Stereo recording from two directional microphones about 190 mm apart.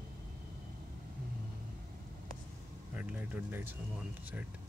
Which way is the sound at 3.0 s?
5° right (ahead or behind).